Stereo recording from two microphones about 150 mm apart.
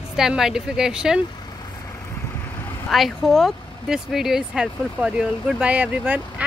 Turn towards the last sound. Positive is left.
turn(degrees=-10)  # may be behind; listen again after turning